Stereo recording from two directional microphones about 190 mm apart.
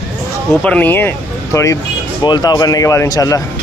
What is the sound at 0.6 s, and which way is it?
Speech, 10° left (ahead or behind).